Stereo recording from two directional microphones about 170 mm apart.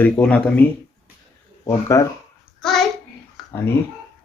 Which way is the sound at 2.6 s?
Centre (ahead or behind).